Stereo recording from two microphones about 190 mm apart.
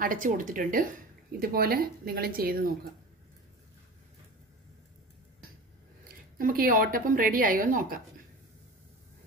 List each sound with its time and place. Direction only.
0.0 s a woman's voice: 45° right (ahead or behind)
6.3 s a woman's voice: 50° right (ahead or behind)